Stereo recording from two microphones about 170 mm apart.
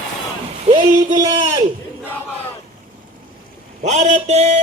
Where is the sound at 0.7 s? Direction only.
35° right (ahead or behind).